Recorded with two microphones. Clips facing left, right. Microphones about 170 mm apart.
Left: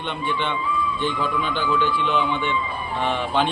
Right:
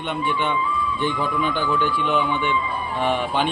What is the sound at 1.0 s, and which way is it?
A man's voice, 10° right (ahead or behind).